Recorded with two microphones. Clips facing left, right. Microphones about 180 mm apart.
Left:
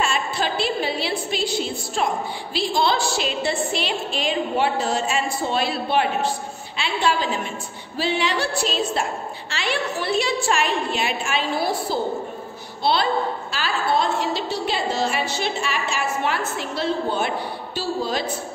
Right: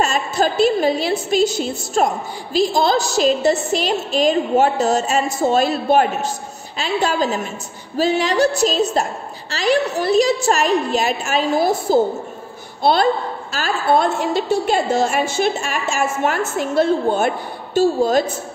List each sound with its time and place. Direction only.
0.0 s a woman's voice: 40° right (ahead or behind)